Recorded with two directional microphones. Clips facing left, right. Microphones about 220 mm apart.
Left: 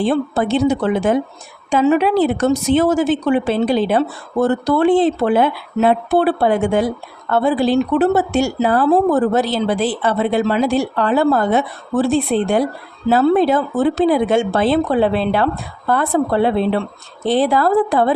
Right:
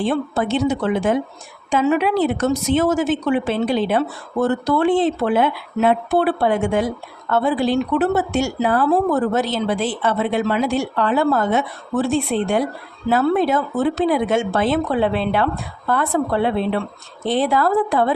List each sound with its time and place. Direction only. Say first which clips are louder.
0.0 s a woman's voice: left 3 dB; 35° left (ahead or behind)